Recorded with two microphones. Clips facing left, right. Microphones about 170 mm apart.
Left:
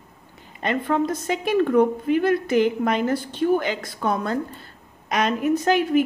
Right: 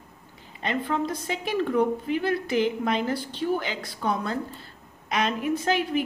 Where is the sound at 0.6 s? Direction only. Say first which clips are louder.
Left 5 dB; 50° left (ahead or behind).